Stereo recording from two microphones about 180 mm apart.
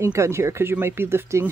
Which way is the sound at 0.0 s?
15° right (ahead or behind).